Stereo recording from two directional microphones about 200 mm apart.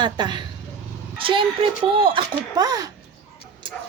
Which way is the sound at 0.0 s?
20° right (ahead or behind).